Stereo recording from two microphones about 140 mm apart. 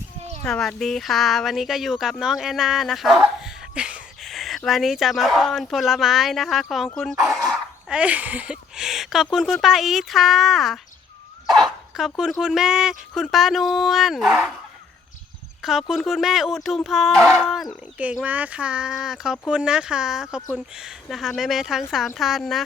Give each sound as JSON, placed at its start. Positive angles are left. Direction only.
{"t": 0.2, "sound": "a sound", "side_deg": -50}
{"t": 0.4, "sound": "speech", "side_deg": 5}
{"t": 11.9, "sound": "speech", "side_deg": -5}
{"t": 15.6, "sound": "speech", "side_deg": 0}